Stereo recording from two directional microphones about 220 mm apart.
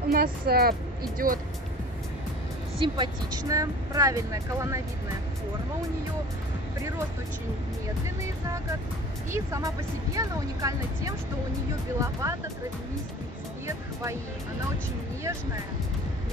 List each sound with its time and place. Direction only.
0.1 s a woman's voice: 45° right (ahead or behind)
2.8 s speech: 20° right (ahead or behind)
9.3 s speech: 15° right (ahead or behind)